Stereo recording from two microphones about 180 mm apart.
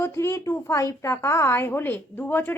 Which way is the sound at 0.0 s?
15° left (ahead or behind).